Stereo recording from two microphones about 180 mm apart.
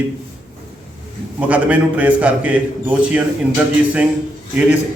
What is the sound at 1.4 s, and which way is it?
A man's voice, 10° right (ahead or behind).